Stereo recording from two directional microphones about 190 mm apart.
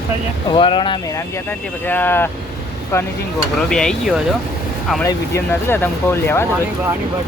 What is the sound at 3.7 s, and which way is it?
Speech, 5° left (ahead or behind).